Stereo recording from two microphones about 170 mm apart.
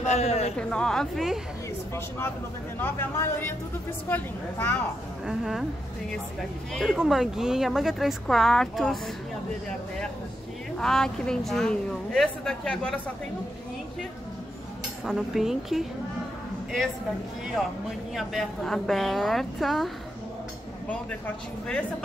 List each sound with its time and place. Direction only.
0.0 s speech: 40° left (ahead or behind)
0.6 s speech: 5° left (ahead or behind)
2.0 s a woman's voice: 15° left (ahead or behind)
5.2 s speech: centre (ahead or behind)
6.7 s speech: centre (ahead or behind)
10.8 s speech: 5° left (ahead or behind)
15.0 s speech: centre (ahead or behind)
18.1 s speech: centre (ahead or behind)